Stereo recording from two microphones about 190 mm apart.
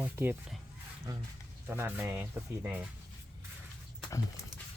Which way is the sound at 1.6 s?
10° right (ahead or behind).